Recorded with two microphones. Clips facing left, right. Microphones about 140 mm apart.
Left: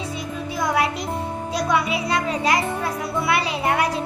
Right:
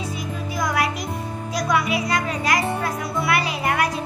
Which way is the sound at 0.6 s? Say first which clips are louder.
Left 1 dB; 30° left (ahead or behind).